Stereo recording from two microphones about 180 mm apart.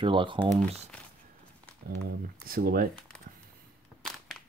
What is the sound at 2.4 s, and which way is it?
Speech, 55° right (ahead or behind).